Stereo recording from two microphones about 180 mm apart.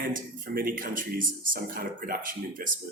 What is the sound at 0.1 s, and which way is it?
A man's voice, 50° right (ahead or behind).